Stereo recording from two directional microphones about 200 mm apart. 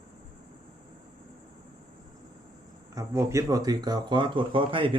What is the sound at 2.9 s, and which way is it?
Speech, 15° right (ahead or behind).